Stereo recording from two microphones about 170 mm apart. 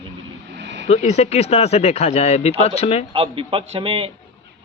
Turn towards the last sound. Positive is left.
turn(degrees=-35)  # may be behind; listen again after turning